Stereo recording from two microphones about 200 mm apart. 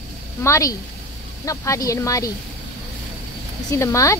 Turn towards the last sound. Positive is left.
turn(degrees=15)  # may be behind; listen again after turning